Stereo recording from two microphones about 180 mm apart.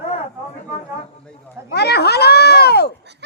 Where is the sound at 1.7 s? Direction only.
65° left (ahead or behind).